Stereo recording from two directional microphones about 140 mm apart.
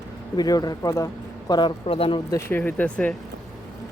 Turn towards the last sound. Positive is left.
turn(degrees=10)  # may be behind; listen again after turning